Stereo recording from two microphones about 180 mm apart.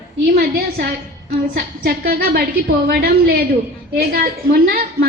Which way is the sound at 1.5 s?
55° right (ahead or behind).